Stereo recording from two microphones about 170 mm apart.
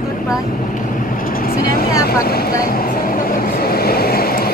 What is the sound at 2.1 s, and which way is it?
Speech, 65° left (ahead or behind).